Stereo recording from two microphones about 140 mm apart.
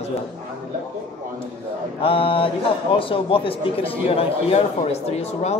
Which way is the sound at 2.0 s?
40° left (ahead or behind).